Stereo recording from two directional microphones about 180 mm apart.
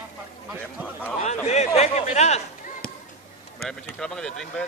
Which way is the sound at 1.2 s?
40° left (ahead or behind).